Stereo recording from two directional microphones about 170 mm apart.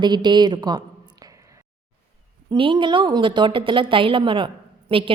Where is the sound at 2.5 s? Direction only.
30° right (ahead or behind).